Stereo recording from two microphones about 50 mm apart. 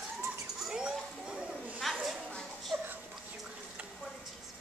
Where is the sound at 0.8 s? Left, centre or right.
Centre.